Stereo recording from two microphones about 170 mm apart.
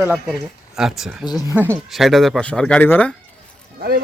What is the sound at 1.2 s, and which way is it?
Speech, 20° left (ahead or behind).